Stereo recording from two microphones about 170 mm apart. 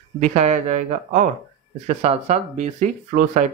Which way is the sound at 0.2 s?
40° right (ahead or behind).